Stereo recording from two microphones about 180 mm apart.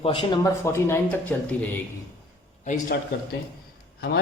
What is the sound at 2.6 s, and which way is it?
Speech, 45° left (ahead or behind).